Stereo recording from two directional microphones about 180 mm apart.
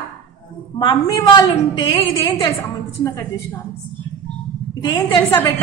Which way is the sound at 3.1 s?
15° left (ahead or behind).